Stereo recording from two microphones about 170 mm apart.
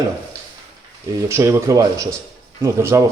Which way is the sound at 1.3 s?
15° right (ahead or behind).